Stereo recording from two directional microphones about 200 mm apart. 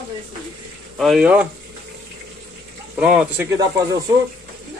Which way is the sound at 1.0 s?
Centre (ahead or behind).